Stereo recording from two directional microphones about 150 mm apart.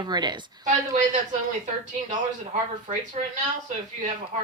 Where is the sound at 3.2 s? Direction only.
50° right (ahead or behind).